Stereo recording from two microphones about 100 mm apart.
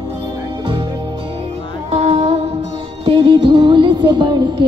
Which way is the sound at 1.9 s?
90° right.